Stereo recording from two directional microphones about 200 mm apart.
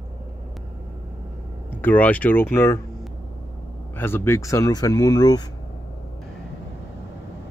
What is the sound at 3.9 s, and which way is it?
Speech, 10° left (ahead or behind).